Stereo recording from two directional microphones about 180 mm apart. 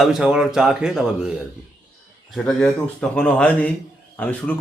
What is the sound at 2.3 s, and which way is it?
Mantra, 5° left (ahead or behind).